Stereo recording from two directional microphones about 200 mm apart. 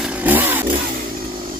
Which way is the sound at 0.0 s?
5° right (ahead or behind).